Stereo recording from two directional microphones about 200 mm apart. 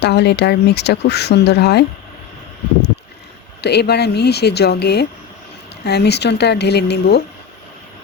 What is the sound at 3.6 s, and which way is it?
Speech, 55° left (ahead or behind).